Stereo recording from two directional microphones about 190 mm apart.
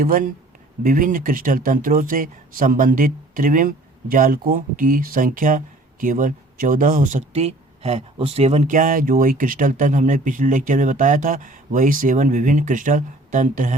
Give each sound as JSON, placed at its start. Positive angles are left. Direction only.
{"t": 0.0, "sound": "speech", "side_deg": -45}